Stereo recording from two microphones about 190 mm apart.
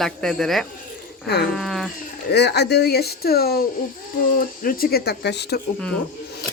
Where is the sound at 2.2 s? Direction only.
60° left (ahead or behind).